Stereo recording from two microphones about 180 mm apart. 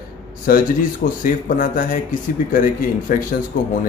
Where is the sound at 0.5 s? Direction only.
55° left (ahead or behind).